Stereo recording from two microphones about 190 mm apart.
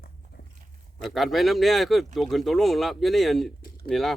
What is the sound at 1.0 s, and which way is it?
Speech, centre (ahead or behind).